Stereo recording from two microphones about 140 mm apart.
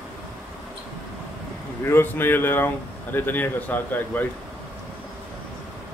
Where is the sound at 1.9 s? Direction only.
15° left (ahead or behind).